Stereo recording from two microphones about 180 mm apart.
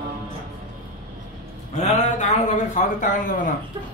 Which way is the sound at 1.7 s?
40° left (ahead or behind).